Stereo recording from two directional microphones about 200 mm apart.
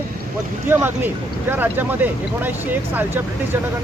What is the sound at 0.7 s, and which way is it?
Speech, 10° right (ahead or behind).